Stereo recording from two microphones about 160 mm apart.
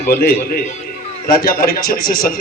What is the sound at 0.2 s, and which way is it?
A man's voice, 70° left (ahead or behind).